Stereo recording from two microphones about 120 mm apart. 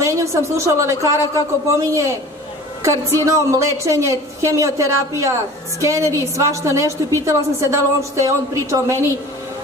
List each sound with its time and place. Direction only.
0.0 s a woman's voice: 25° right (ahead or behind)
3.3 s a woman's voice: 25° right (ahead or behind)